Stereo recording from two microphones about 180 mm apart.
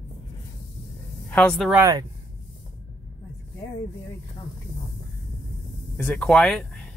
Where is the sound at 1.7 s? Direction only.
15° right (ahead or behind).